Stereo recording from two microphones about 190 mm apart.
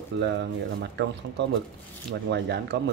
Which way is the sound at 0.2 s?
65° right (ahead or behind).